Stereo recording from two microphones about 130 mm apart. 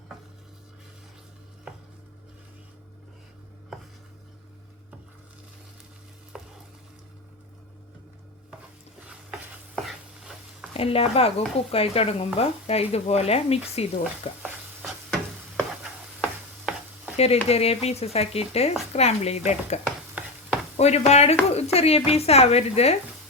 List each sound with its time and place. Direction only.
6.3 s frying: 5° right (ahead or behind)
9.7 s stir: centre (ahead or behind)
10.8 s speech: 50° left (ahead or behind)
14.0 s stir: 10° right (ahead or behind)
17.2 s speech: 50° left (ahead or behind)